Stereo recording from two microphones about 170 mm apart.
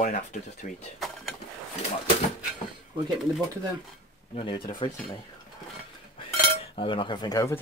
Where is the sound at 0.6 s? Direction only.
55° left (ahead or behind).